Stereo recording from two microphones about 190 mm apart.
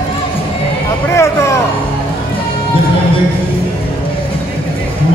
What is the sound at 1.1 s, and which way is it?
Vehicle, 15° left (ahead or behind).